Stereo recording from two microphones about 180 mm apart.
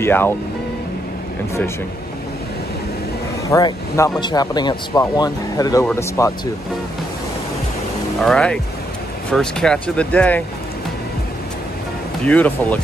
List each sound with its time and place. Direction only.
0.0 s speech: 10° left (ahead or behind)
3.4 s speech: 20° left (ahead or behind)
8.2 s speech: 5° left (ahead or behind)
12.3 s speech: 10° left (ahead or behind)